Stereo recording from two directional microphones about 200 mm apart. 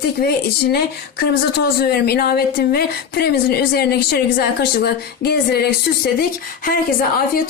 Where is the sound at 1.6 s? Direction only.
50° left (ahead or behind).